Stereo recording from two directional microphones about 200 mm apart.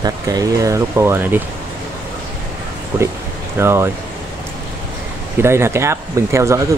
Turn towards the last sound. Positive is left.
turn(degrees=-15)  # may be behind; listen again after turning